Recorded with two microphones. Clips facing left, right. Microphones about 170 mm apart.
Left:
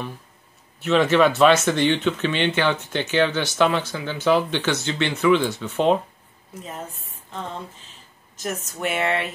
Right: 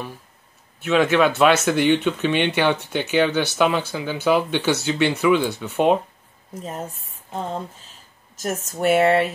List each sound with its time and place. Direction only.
0.8 s speech: centre (ahead or behind)
8.4 s speech: 45° right (ahead or behind)